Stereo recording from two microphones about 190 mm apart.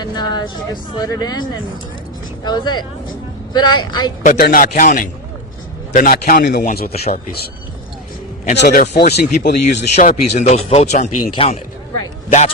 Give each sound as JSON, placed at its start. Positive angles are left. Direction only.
{"t": 0.0, "sound": "speech", "side_deg": 20}
{"t": 4.2, "sound": "a man's voice", "side_deg": 45}
{"t": 8.5, "sound": "a man's voice", "side_deg": 50}
{"t": 9.0, "sound": "speech", "side_deg": 60}
{"t": 9.7, "sound": "speech", "side_deg": 35}